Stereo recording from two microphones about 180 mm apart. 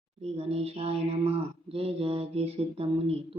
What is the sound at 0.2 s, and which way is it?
Speech, 35° right (ahead or behind).